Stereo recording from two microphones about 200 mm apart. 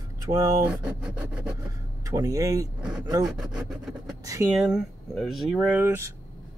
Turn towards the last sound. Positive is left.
turn(degrees=-15)  # may be behind; listen again after turning